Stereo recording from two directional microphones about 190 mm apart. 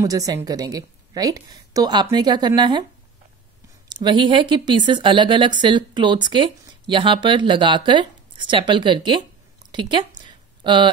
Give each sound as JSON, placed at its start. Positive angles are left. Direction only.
{"t": 0.0, "sound": "speech", "side_deg": -20}
{"t": 3.9, "sound": "speech", "side_deg": -25}
{"t": 9.7, "sound": "a sound", "side_deg": -25}